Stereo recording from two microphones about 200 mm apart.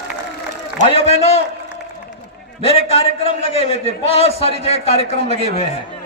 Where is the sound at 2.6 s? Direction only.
30° left (ahead or behind).